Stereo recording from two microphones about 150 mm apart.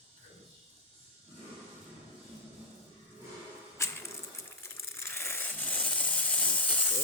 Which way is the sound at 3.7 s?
20° left (ahead or behind).